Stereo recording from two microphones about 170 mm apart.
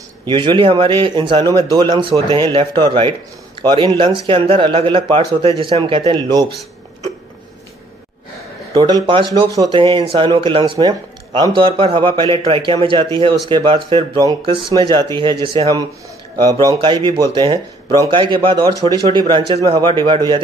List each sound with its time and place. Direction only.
0.2 s a man's voice: 30° right (ahead or behind)
8.7 s a man's voice: 25° right (ahead or behind)